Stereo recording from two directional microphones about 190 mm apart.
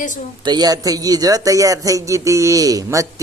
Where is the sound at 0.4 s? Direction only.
20° right (ahead or behind).